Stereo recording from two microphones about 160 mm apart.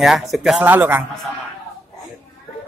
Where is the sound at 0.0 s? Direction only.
Centre (ahead or behind).